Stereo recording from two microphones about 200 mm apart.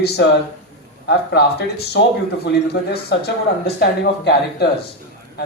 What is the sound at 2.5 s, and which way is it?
Speech, 55° left (ahead or behind).